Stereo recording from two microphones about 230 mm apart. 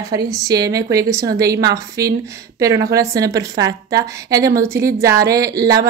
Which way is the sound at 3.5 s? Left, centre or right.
Right.